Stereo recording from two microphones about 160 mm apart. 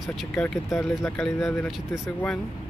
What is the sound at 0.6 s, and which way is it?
Speech, 20° left (ahead or behind).